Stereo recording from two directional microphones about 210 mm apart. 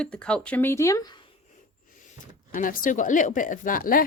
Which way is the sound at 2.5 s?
40° left (ahead or behind).